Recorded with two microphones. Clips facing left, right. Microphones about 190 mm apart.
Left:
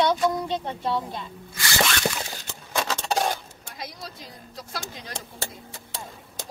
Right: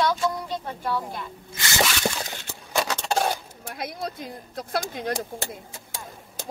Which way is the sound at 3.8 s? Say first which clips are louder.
Right 7 dB; 55° right (ahead or behind).